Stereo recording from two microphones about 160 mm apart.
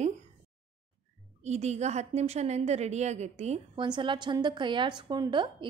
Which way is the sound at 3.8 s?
30° right (ahead or behind).